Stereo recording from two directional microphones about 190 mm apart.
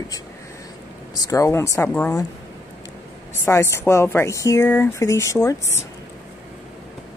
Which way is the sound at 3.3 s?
15° left (ahead or behind).